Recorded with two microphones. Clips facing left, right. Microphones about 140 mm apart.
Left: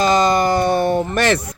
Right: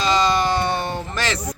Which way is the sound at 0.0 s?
50° left (ahead or behind).